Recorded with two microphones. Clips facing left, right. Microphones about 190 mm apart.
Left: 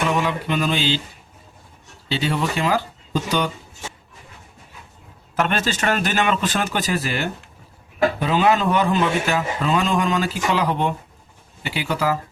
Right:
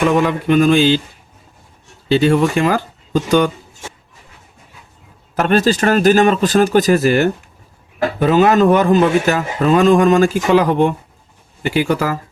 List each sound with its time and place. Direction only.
0.0 s speech: 50° right (ahead or behind)
2.0 s speech: 50° right (ahead or behind)
5.4 s speech: 40° right (ahead or behind)